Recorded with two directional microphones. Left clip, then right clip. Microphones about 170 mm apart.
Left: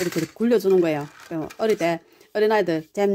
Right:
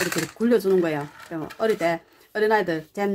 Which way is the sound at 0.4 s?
45° left (ahead or behind).